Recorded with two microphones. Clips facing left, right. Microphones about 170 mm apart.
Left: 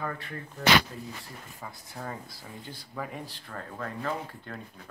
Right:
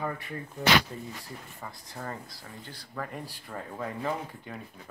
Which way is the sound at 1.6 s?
5° left (ahead or behind).